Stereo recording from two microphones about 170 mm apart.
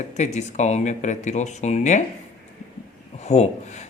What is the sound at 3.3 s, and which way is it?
Speech, 40° left (ahead or behind).